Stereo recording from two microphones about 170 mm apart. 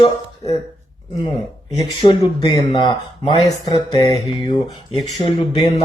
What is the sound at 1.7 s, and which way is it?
Speech, 25° left (ahead or behind).